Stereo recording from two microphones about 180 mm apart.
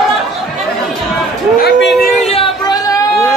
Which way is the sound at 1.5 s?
65° left (ahead or behind).